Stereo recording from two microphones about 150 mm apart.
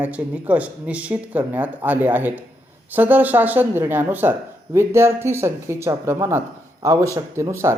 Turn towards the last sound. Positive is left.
turn(degrees=-20)  # may be behind; listen again after turning